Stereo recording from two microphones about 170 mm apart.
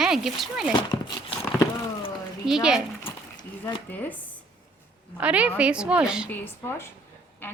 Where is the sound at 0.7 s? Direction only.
25° left (ahead or behind).